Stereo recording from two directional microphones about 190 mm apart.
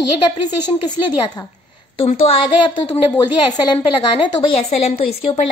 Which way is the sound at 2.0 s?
30° left (ahead or behind).